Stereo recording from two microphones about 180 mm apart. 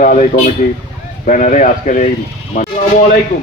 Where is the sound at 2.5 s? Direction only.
50° left (ahead or behind).